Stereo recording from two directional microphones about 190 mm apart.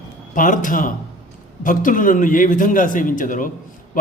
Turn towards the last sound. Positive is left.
turn(degrees=45)  # may be behind; listen again after turning